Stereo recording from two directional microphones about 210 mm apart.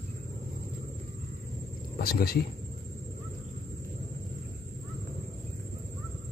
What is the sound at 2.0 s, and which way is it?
Speech, 45° left (ahead or behind).